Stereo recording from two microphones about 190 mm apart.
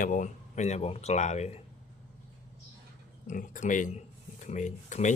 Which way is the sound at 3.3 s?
40° left (ahead or behind).